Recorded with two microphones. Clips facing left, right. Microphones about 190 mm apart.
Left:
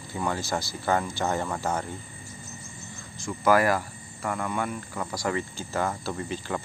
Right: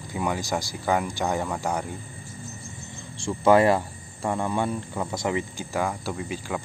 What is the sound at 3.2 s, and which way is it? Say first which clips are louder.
Speech: right 4 dB; 25° right (ahead or behind).